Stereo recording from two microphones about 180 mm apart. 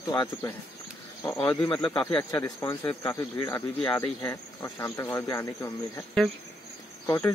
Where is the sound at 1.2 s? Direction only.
5° left (ahead or behind).